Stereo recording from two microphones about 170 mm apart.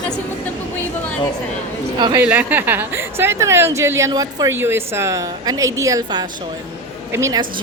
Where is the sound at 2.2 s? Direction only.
10° right (ahead or behind).